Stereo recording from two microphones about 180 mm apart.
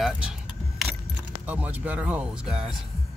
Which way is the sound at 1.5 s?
10° right (ahead or behind).